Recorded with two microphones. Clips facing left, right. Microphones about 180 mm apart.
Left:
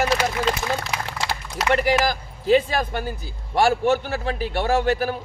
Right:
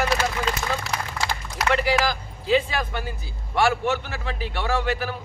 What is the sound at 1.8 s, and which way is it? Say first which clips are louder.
A man's voice: left 2 dB; 50° left (ahead or behind).